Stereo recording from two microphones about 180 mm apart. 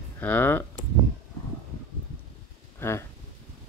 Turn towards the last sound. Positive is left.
turn(degrees=15)  # may be behind; listen again after turning